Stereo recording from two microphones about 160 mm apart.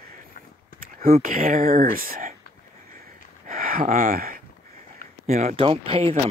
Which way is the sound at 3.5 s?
60° right (ahead or behind).